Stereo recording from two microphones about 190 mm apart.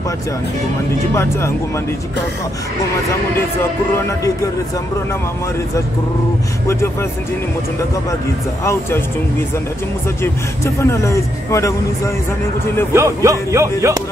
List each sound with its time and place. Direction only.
1.1 s speech: 15° left (ahead or behind)
6.7 s speech: 15° left (ahead or behind)
10.2 s speech: 15° left (ahead or behind)
12.9 s speech: 15° right (ahead or behind)